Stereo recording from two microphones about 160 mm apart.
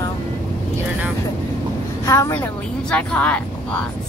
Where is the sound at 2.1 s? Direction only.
20° left (ahead or behind).